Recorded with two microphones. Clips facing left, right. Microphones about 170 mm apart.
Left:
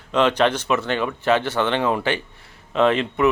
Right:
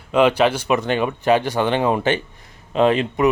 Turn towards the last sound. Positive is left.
turn(degrees=-15)  # may be behind; listen again after turning